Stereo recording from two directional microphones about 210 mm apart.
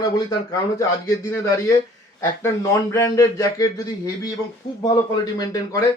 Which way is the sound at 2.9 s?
15° left (ahead or behind).